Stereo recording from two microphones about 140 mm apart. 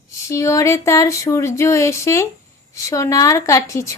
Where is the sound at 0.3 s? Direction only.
20° left (ahead or behind).